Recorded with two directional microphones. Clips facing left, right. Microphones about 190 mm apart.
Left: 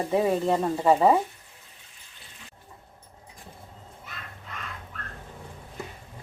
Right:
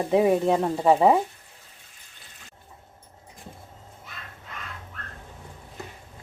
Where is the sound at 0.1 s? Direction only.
15° right (ahead or behind).